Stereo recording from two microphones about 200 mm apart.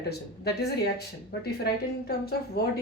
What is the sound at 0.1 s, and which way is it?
Speech, 55° left (ahead or behind).